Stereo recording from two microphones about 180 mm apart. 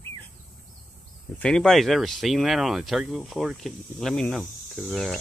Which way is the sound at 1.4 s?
5° left (ahead or behind).